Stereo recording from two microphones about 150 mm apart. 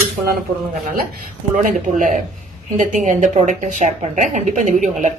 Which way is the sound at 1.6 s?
60° right (ahead or behind).